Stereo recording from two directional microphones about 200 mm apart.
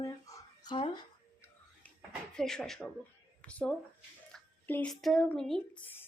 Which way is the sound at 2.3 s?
5° left (ahead or behind).